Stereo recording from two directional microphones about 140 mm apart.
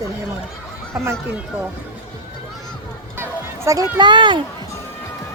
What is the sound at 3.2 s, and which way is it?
Music, 20° right (ahead or behind).